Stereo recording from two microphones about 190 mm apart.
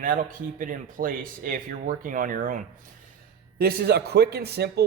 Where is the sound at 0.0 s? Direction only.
45° right (ahead or behind).